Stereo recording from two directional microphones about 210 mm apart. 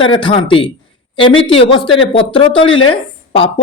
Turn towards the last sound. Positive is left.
turn(degrees=25)  # may be behind; listen again after turning